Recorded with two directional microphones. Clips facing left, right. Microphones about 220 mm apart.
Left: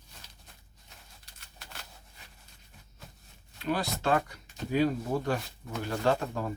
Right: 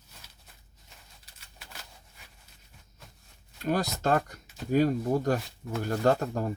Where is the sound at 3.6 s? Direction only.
45° right (ahead or behind).